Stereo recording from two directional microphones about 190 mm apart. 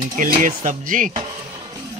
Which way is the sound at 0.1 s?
45° right (ahead or behind).